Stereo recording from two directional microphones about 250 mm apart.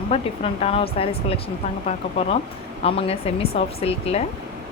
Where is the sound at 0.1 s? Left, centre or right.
Left.